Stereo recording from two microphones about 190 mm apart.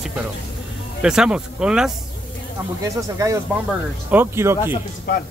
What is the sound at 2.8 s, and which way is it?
Speech, 15° right (ahead or behind).